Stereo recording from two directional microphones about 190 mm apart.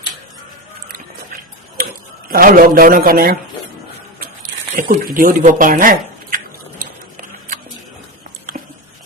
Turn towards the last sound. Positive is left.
turn(degrees=-45)  # may be behind; listen again after turning